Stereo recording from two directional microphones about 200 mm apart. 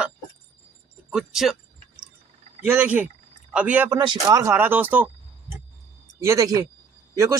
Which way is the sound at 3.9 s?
20° right (ahead or behind).